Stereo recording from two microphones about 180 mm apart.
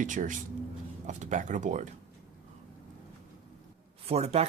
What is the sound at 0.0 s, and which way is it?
Speech, 45° right (ahead or behind).